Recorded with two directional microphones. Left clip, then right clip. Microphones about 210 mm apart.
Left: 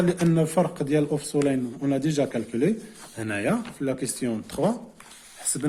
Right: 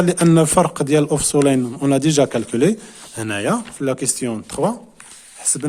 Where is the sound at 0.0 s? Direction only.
45° right (ahead or behind).